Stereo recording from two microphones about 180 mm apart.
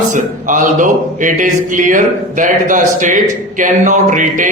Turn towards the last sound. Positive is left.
turn(degrees=-45)  # may be behind; listen again after turning